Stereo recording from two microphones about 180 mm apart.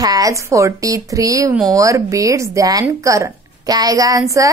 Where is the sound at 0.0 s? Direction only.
20° right (ahead or behind).